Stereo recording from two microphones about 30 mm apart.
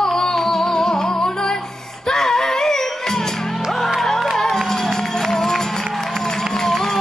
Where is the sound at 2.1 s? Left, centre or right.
Centre.